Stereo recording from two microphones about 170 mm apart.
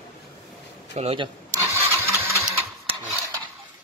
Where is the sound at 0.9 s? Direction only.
35° right (ahead or behind).